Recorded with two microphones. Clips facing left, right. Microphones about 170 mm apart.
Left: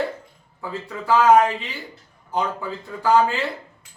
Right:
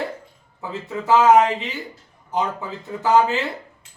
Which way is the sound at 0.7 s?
20° right (ahead or behind).